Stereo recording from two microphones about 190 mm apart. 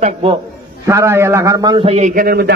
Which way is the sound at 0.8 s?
15° right (ahead or behind).